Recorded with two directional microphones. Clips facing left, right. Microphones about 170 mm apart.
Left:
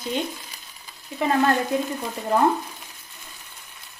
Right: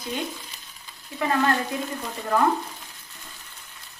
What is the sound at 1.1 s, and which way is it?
Stir, 15° left (ahead or behind).